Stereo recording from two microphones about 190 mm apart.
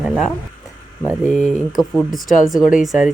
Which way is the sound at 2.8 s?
5° right (ahead or behind).